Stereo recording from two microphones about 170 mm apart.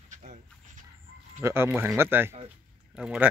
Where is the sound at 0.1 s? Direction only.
45° right (ahead or behind).